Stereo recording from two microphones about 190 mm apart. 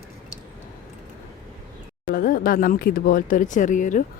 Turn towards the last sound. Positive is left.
turn(degrees=40)  # may be behind; listen again after turning